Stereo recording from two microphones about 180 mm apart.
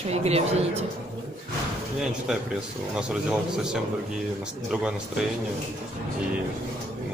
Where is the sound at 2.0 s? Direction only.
5° right (ahead or behind).